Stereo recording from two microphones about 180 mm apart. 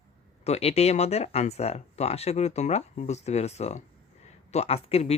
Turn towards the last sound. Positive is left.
turn(degrees=35)  # may be behind; listen again after turning